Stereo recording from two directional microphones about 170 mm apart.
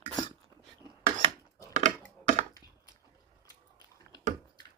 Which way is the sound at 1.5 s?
45° right (ahead or behind).